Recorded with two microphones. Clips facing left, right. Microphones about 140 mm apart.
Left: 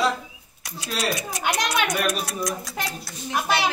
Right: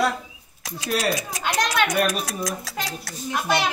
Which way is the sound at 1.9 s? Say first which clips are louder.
Right 2 dB; 90° right.